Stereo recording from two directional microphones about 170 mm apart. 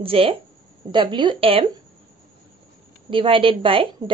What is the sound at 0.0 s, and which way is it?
A woman's voice, 35° right (ahead or behind).